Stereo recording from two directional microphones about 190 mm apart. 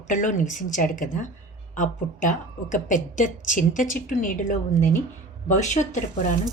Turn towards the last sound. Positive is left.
turn(degrees=40)  # may be behind; listen again after turning